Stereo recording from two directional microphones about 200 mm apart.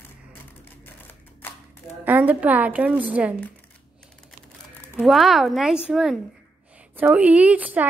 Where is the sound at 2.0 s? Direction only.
10° right (ahead or behind).